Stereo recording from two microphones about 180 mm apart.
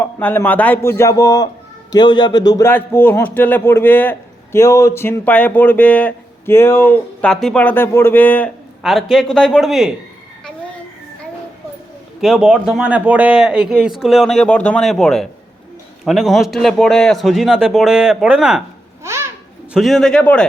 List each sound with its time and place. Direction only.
0.0 s a man's voice: 10° left (ahead or behind)
12.2 s a man's voice: centre (ahead or behind)
19.0 s babbling: 15° right (ahead or behind)
19.7 s a man's voice: centre (ahead or behind)